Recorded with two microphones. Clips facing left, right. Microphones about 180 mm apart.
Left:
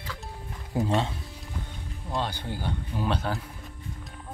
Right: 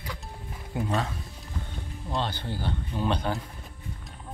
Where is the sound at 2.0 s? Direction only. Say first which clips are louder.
Even; 5° left (ahead or behind).